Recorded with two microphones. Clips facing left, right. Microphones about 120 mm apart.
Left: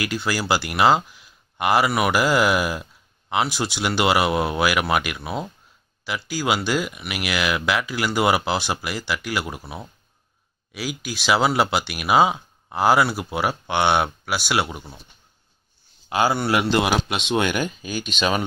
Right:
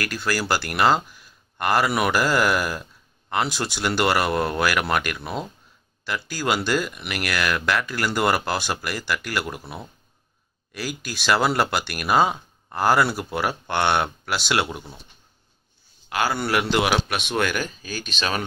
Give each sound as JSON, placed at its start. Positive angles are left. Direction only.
{"t": 0.0, "sound": "speech", "side_deg": 10}
{"t": 16.1, "sound": "a man's voice", "side_deg": 25}
{"t": 16.3, "sound": "speech", "side_deg": 10}
{"t": 16.7, "sound": "speech", "side_deg": -5}
{"t": 17.4, "sound": "speech", "side_deg": 15}